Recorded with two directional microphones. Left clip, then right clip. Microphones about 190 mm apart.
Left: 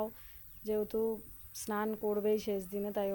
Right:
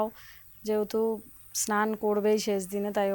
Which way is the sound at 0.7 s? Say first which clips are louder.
Right 6 dB; 10° right (ahead or behind).